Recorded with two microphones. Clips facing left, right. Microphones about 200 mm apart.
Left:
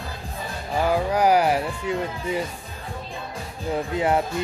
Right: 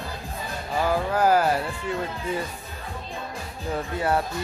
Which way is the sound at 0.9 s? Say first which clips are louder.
Left 2 dB; 15° left (ahead or behind).